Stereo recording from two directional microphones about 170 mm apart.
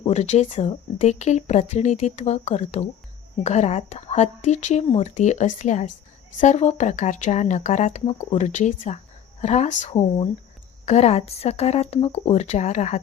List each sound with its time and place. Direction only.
0.0 s speech: 40° left (ahead or behind)